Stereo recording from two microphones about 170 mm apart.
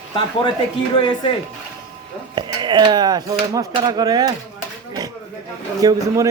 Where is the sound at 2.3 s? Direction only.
25° right (ahead or behind).